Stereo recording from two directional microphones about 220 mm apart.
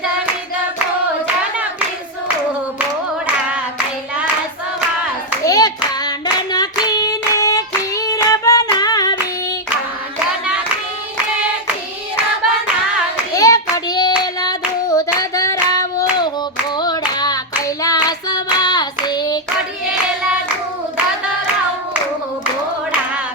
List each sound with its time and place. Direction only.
5.4 s hands: 15° left (ahead or behind)
10.4 s hands: 5° right (ahead or behind)
13.3 s child singing: 15° left (ahead or behind)
14.4 s hands: 15° left (ahead or behind)